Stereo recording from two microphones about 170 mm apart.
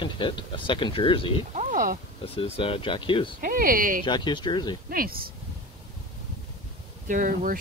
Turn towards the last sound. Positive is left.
turn(degrees=-50)  # may be behind; listen again after turning